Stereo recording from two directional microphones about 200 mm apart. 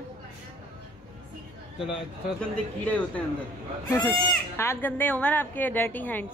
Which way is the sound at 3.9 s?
10° left (ahead or behind).